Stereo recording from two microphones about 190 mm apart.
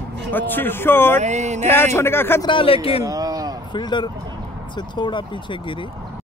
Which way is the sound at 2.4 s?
30° left (ahead or behind).